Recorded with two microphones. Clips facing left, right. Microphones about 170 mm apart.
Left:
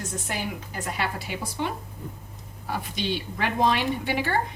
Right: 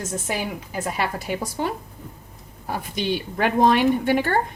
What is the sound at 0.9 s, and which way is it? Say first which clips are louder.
A woman's voice: right 4 dB; 45° right (ahead or behind).